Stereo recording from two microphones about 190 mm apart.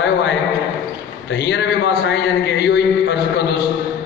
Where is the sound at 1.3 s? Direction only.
65° left (ahead or behind).